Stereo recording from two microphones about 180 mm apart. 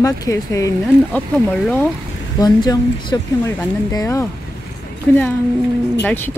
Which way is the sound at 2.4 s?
20° left (ahead or behind).